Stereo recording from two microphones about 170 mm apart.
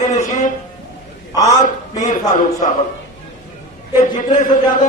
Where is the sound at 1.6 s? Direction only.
50° left (ahead or behind).